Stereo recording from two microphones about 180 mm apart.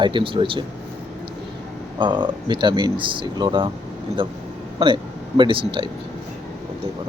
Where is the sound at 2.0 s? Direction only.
25° right (ahead or behind).